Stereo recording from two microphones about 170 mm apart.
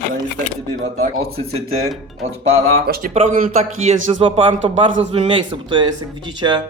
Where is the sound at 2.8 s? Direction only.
60° right (ahead or behind).